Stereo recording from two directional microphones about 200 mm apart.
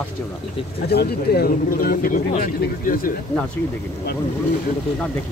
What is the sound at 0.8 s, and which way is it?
Speech, 55° left (ahead or behind).